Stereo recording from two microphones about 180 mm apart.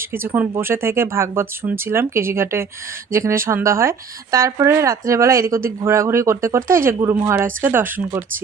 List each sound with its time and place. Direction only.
0.0 s speech: 10° right (ahead or behind)